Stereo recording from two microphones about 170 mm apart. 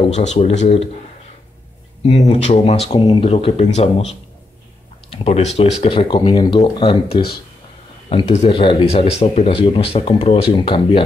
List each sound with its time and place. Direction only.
0.1 s speech: 40° left (ahead or behind)
2.0 s speech: 40° left (ahead or behind)
3.0 s speech: 20° left (ahead or behind)
3.3 s speech: 40° left (ahead or behind)